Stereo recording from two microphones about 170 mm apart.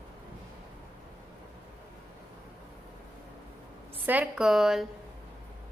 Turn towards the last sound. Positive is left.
turn(degrees=0)  # may be behind; listen again after turning